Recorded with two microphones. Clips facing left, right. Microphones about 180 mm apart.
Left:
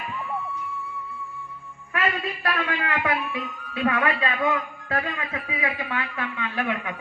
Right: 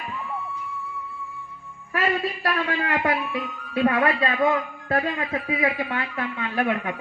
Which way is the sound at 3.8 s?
40° right (ahead or behind).